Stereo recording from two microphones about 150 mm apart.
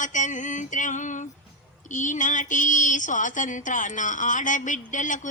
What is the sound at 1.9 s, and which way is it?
Speech, 55° left (ahead or behind).